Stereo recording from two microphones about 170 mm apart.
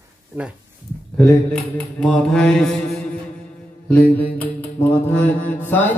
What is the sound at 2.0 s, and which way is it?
Speech, 5° left (ahead or behind).